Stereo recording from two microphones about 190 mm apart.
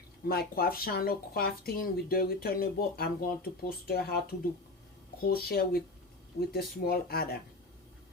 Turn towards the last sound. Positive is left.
turn(degrees=55)  # may be behind; listen again after turning